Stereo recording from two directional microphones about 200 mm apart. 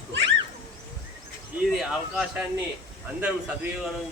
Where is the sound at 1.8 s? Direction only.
Centre (ahead or behind).